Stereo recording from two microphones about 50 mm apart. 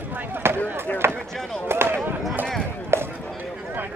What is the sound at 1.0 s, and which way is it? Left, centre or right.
Chop, right.